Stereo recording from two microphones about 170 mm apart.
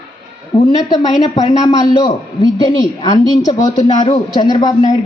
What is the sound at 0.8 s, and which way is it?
A man's voice, 20° left (ahead or behind).